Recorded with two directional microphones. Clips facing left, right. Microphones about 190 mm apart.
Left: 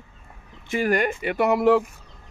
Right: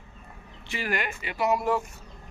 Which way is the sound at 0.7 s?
45° left (ahead or behind).